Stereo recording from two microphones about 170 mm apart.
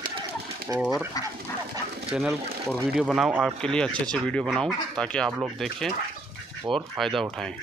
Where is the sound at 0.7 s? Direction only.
20° right (ahead or behind).